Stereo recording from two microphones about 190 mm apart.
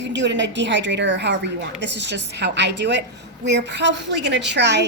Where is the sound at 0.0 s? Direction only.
70° right (ahead or behind).